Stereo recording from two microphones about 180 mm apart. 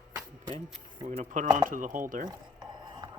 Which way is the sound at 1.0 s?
40° right (ahead or behind).